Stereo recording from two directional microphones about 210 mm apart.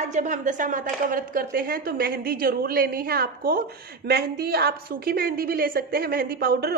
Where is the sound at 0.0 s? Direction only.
35° right (ahead or behind).